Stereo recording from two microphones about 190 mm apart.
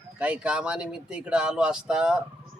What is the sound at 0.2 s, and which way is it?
Speech, 5° right (ahead or behind).